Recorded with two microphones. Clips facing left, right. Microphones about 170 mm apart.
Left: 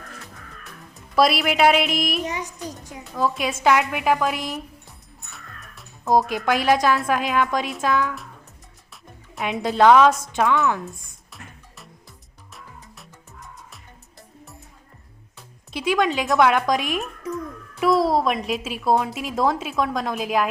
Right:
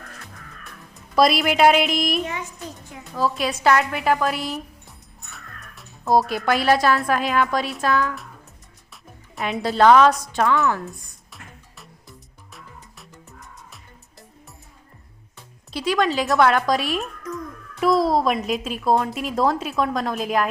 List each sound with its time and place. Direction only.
1.1 s a woman's voice: centre (ahead or behind)
2.4 s a sound: 40° left (ahead or behind)
3.0 s a woman's voice: centre (ahead or behind)
4.4 s music: centre (ahead or behind)
6.6 s a woman's voice: 15° left (ahead or behind)
6.9 s a woman's voice: centre (ahead or behind)
9.3 s music: centre (ahead or behind)
9.6 s a woman's voice: centre (ahead or behind)
15.7 s a woman's voice: centre (ahead or behind)